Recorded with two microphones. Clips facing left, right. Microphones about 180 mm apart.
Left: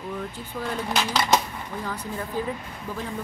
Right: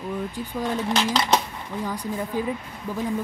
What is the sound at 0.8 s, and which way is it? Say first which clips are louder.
Speech: even; centre (ahead or behind).